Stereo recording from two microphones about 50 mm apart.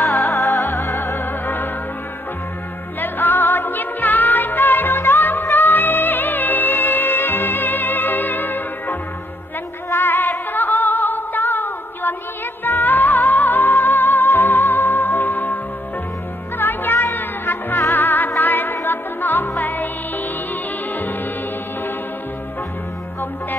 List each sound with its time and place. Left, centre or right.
0.2 s music: left
1.2 s music: left
3.0 s music: left
9.9 s music: left